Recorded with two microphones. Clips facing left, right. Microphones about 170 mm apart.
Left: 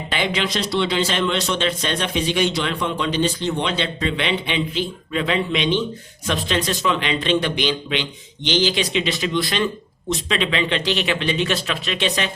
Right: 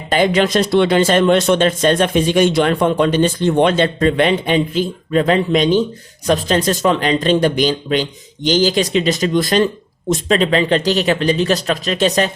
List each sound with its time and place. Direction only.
0.1 s a man's voice: 45° right (ahead or behind)